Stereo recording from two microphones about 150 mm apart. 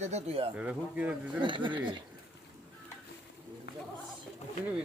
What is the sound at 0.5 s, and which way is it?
Speech, 10° right (ahead or behind).